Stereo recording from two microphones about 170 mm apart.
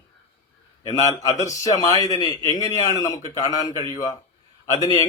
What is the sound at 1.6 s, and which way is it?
A man's voice, 20° left (ahead or behind).